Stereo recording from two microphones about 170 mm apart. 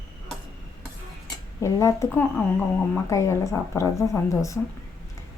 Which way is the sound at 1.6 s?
15° left (ahead or behind).